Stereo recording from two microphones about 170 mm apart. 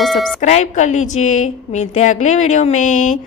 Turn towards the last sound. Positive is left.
turn(degrees=45)  # may be behind; listen again after turning